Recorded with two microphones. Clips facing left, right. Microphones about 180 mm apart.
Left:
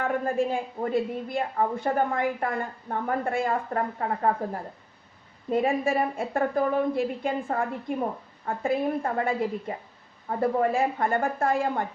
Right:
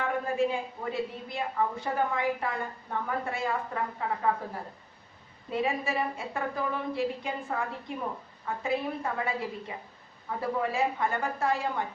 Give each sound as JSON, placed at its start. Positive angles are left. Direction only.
{"t": 0.0, "sound": "a woman's voice", "side_deg": 50}
{"t": 5.5, "sound": "a woman's voice", "side_deg": 50}